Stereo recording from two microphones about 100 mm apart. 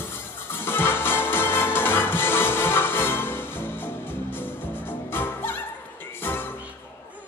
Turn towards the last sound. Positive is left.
turn(degrees=20)  # may be behind; listen again after turning